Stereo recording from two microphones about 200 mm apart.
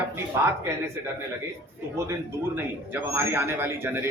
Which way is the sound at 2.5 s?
10° right (ahead or behind).